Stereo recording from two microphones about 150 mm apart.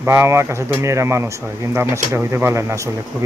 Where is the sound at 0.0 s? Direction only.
15° right (ahead or behind).